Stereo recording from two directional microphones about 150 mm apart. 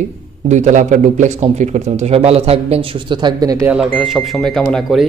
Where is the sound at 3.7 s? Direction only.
Centre (ahead or behind).